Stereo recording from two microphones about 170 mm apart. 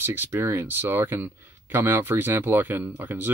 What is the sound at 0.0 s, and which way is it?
Speech, 15° right (ahead or behind).